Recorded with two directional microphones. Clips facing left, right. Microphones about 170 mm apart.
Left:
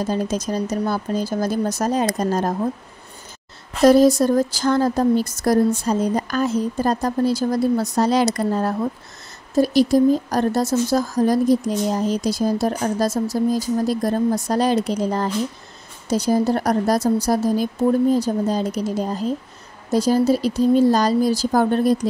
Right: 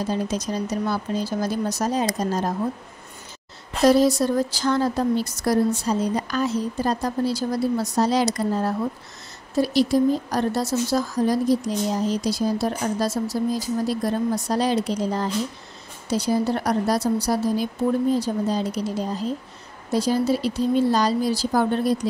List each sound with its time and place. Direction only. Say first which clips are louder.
0.0 s speech: left 3 dB; 45° left (ahead or behind)
3.8 s speech: left 4 dB; 45° left (ahead or behind)
9.6 s speech: left 4 dB; 45° left (ahead or behind)